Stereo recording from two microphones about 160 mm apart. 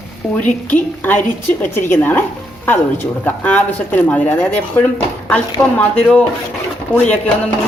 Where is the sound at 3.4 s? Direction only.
10° left (ahead or behind).